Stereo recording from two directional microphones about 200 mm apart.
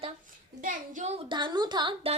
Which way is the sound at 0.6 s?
35° right (ahead or behind).